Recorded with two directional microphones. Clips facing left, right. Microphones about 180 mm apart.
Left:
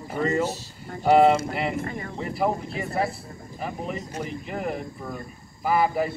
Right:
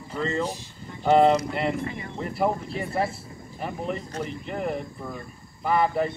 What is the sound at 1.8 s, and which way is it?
Speech, 45° left (ahead or behind).